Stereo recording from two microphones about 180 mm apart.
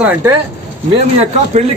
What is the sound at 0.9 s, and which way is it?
Speech, 35° right (ahead or behind).